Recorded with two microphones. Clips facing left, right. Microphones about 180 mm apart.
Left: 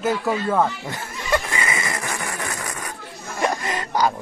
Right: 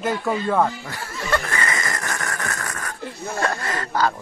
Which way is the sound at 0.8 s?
20° left (ahead or behind).